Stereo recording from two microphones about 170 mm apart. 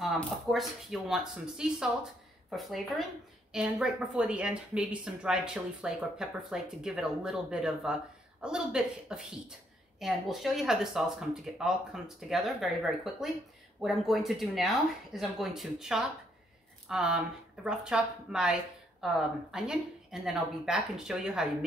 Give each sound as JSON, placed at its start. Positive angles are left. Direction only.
{"t": 0.0, "sound": "a woman's voice", "side_deg": 0}